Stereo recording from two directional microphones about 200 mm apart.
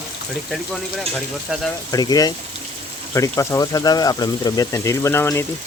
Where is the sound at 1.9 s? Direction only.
20° left (ahead or behind).